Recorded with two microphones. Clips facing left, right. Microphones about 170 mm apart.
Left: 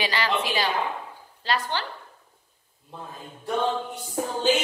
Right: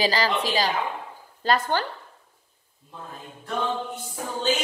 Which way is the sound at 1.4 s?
50° right (ahead or behind).